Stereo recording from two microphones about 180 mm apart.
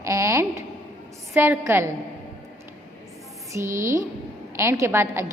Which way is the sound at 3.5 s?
15° right (ahead or behind).